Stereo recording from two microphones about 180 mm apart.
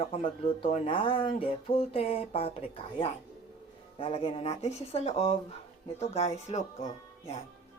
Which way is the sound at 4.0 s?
30° left (ahead or behind).